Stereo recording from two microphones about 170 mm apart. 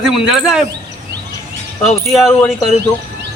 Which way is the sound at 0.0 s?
Centre (ahead or behind).